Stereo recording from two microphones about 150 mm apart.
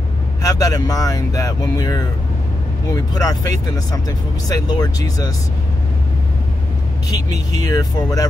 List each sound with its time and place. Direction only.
0.4 s speech: 25° left (ahead or behind)
7.7 s speech: 20° left (ahead or behind)